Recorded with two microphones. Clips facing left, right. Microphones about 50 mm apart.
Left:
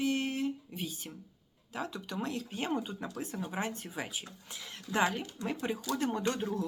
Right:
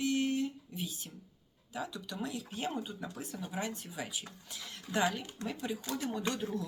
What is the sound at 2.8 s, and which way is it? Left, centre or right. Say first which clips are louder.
Speech: left 3 dB; left.